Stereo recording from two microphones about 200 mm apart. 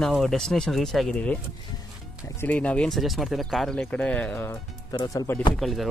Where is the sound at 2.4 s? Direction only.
5° left (ahead or behind).